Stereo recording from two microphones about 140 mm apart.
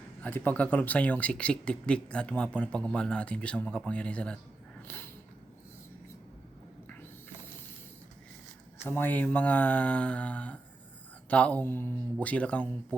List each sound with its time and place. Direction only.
0.2 s speech: 10° left (ahead or behind)
4.9 s snort: 15° left (ahead or behind)
8.8 s speech: 15° left (ahead or behind)